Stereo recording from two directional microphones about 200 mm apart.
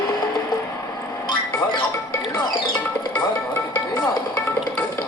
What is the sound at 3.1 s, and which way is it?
Music, 5° left (ahead or behind).